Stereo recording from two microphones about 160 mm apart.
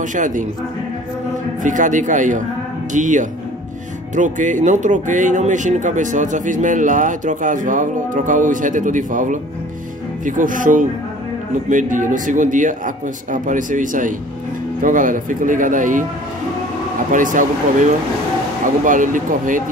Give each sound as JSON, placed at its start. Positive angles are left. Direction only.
{"t": 0.0, "sound": "speech", "side_deg": -50}
{"t": 1.6, "sound": "speech", "side_deg": -50}
{"t": 17.1, "sound": "speech", "side_deg": -55}
{"t": 18.9, "sound": "speech", "side_deg": -55}